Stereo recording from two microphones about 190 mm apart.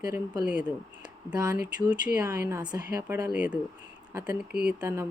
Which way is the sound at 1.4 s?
20° right (ahead or behind).